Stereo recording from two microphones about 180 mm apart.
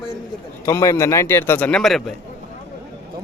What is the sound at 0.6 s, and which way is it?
A man's voice, 20° left (ahead or behind).